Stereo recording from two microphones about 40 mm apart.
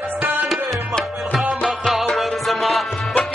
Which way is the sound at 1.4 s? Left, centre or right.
Centre.